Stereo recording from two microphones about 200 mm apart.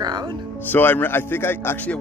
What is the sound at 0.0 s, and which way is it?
Music, 20° right (ahead or behind).